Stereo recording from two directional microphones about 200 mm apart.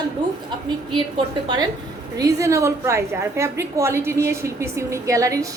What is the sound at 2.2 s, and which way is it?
A woman's voice, 15° right (ahead or behind).